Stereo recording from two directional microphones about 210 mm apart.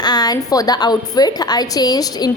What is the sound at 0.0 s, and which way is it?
A woman's voice, 20° left (ahead or behind).